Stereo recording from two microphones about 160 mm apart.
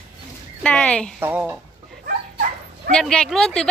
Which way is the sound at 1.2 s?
15° right (ahead or behind).